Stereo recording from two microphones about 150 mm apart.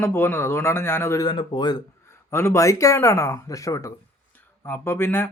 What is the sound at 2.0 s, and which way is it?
A man's voice, 15° left (ahead or behind).